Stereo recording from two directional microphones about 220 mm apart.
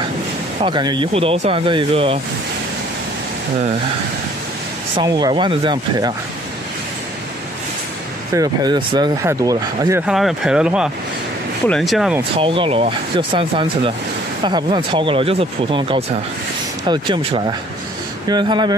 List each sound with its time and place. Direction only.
0.6 s speech: 20° right (ahead or behind)
4.9 s speech: 20° right (ahead or behind)
8.4 s speech: 20° right (ahead or behind)
10.0 s speech: centre (ahead or behind)
12.4 s speech: 25° right (ahead or behind)